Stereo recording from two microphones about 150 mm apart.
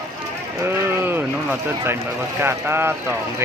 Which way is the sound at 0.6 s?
15° right (ahead or behind).